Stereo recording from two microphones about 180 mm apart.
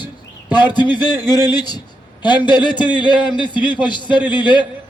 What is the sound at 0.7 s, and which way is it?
A man's voice, 25° left (ahead or behind).